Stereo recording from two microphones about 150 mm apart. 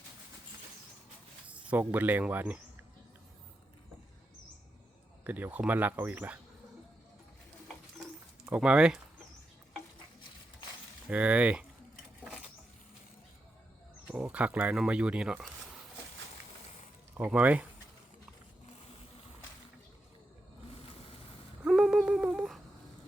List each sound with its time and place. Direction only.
1.5 s speech: 10° right (ahead or behind)
5.2 s speech: 10° right (ahead or behind)
8.5 s speech: 5° right (ahead or behind)
11.1 s speech: 10° right (ahead or behind)
14.1 s speech: 10° right (ahead or behind)
17.2 s speech: 10° right (ahead or behind)
20.7 s a sound: 40° left (ahead or behind)
21.6 s a sound: 5° right (ahead or behind)